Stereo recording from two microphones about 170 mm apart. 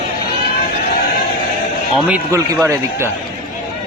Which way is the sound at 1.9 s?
Centre (ahead or behind).